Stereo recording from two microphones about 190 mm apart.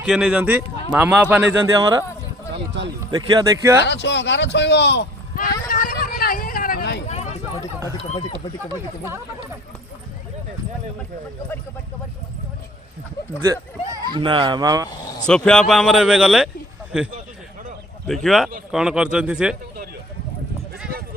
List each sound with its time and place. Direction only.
0.0 s a man's voice: 5° right (ahead or behind)
1.8 s speech: 20° right (ahead or behind)
2.5 s speech: 70° right (ahead or behind)
3.1 s speech: 20° right (ahead or behind)
3.8 s speech: 65° left (ahead or behind)
5.4 s a sound: 45° left (ahead or behind)
7.1 s a sound: 35° left (ahead or behind)
13.4 s speech: 15° right (ahead or behind)
15.3 s speech: 5° left (ahead or behind)